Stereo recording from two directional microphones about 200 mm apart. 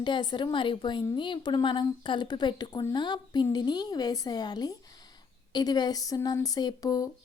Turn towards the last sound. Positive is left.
turn(degrees=20)  # may be behind; listen again after turning